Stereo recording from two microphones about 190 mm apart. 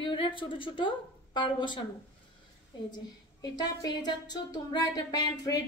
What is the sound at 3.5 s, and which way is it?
A woman's voice, 20° left (ahead or behind).